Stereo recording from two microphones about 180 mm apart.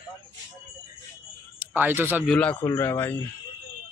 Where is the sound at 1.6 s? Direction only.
10° right (ahead or behind).